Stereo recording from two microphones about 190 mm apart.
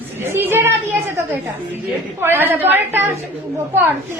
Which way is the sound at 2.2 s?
10° right (ahead or behind).